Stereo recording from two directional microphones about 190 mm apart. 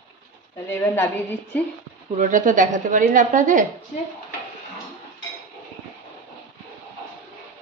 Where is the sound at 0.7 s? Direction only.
10° left (ahead or behind).